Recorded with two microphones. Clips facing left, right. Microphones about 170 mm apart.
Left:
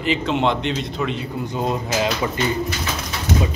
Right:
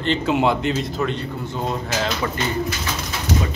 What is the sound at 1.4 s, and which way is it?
Speech, 15° left (ahead or behind).